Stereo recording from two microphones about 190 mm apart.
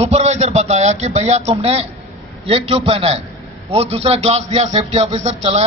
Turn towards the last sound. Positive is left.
turn(degrees=-35)  # may be behind; listen again after turning